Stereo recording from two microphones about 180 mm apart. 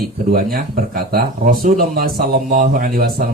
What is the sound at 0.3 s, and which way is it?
Speech, 55° right (ahead or behind).